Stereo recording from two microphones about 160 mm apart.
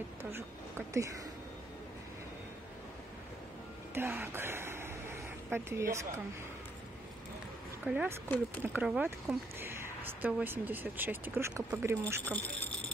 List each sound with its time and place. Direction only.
0.2 s speech: 15° right (ahead or behind)
3.9 s speech: 15° right (ahead or behind)
7.8 s speech: 10° right (ahead or behind)
12.3 s a sound: 10° left (ahead or behind)